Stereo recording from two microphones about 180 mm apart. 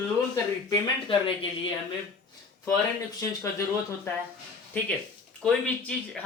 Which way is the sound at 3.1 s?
15° left (ahead or behind).